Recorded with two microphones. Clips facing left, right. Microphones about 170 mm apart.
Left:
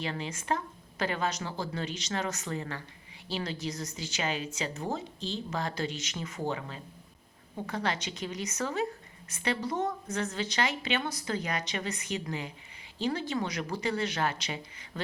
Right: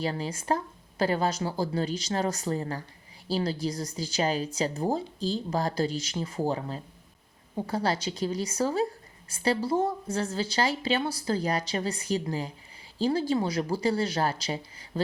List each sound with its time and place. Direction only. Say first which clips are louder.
0.0 s a woman's voice: right 5 dB; 35° right (ahead or behind)